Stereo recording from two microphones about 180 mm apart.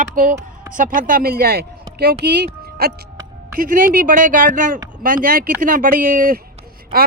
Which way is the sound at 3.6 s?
50° right (ahead or behind).